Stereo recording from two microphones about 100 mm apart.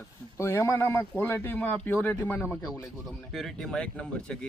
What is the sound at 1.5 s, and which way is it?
A man's voice, 15° left (ahead or behind).